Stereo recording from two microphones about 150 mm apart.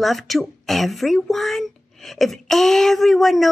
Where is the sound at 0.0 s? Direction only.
Centre (ahead or behind).